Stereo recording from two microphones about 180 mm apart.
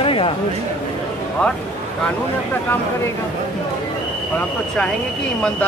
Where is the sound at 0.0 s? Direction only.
30° left (ahead or behind).